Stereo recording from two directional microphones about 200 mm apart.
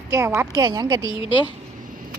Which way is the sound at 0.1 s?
15° right (ahead or behind).